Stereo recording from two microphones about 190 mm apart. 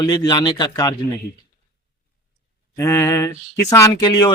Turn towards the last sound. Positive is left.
turn(degrees=20)  # may be behind; listen again after turning